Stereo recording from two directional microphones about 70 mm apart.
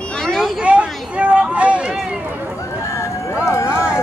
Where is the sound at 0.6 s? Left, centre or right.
Centre.